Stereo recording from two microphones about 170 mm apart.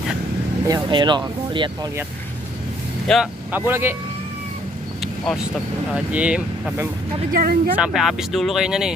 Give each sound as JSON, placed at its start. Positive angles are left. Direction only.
{"t": 0.7, "sound": "speech", "side_deg": -25}
{"t": 3.1, "sound": "speech", "side_deg": 5}
{"t": 3.5, "sound": "speech", "side_deg": -10}
{"t": 5.0, "sound": "vehicle", "side_deg": 0}
{"t": 5.9, "sound": "speech", "side_deg": -5}
{"t": 7.3, "sound": "speech", "side_deg": -60}
{"t": 7.7, "sound": "speech", "side_deg": -5}